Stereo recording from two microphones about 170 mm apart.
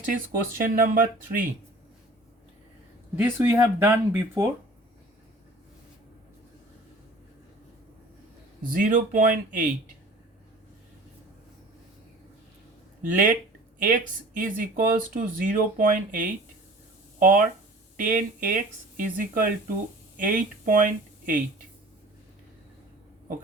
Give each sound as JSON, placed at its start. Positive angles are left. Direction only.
{"t": 0.3, "sound": "speech", "side_deg": -55}
{"t": 3.2, "sound": "speech", "side_deg": -15}
{"t": 8.7, "sound": "speech", "side_deg": -50}
{"t": 13.0, "sound": "speech", "side_deg": -50}